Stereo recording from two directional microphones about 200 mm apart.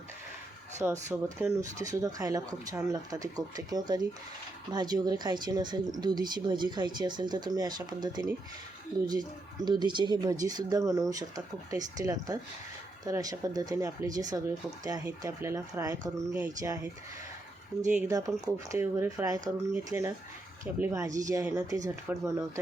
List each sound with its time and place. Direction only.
0.8 s speech: 10° right (ahead or behind)
18.1 s speech: 20° right (ahead or behind)